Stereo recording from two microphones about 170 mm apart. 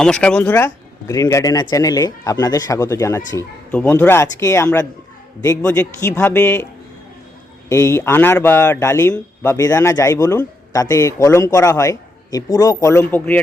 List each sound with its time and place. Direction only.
0.0 s speech: 5° left (ahead or behind)
3.3 s speech: 5° left (ahead or behind)
7.7 s speech: 20° left (ahead or behind)